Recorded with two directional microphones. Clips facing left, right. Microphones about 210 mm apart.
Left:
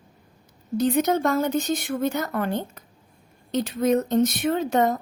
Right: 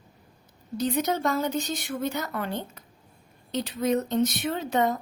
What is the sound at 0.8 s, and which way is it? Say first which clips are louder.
Speech: left 5 dB; 50° left (ahead or behind).